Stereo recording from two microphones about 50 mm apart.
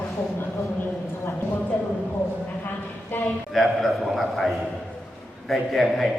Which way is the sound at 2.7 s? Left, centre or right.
Left.